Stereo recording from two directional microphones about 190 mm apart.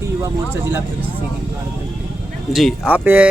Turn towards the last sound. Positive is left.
turn(degrees=-10)  # may be behind; listen again after turning